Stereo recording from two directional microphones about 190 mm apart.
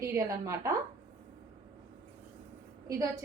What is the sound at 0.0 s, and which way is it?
Speech, 15° right (ahead or behind).